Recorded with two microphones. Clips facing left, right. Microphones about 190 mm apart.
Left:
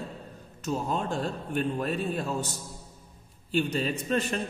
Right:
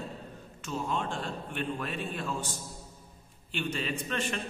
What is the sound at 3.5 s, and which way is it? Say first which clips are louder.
Speech: left 6 dB; 40° left (ahead or behind).